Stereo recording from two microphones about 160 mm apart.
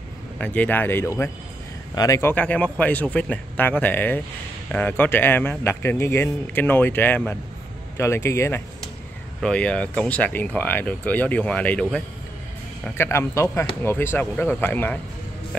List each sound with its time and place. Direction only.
0.4 s a man's voice: 10° left (ahead or behind)
2.3 s speech: 10° left (ahead or behind)
9.4 s speech: 5° left (ahead or behind)